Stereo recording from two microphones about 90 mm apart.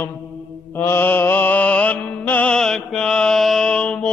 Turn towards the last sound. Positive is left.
turn(degrees=15)  # may be behind; listen again after turning